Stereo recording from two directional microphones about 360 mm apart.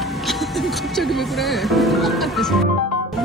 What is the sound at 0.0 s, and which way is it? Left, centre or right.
Speech, centre.